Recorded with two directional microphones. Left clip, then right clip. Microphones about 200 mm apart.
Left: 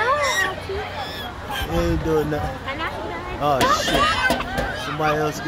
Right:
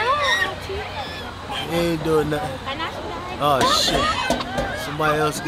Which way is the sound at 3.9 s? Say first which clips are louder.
Left 2 dB; 35° left (ahead or behind).